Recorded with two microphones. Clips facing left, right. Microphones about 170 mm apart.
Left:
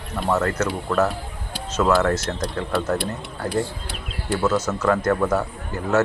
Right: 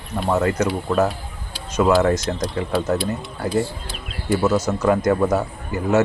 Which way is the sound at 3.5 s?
75° left (ahead or behind).